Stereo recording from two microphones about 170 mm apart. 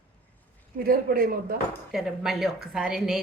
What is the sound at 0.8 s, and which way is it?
Speech, 60° right (ahead or behind).